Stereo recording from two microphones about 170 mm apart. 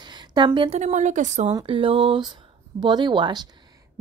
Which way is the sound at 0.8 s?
45° right (ahead or behind).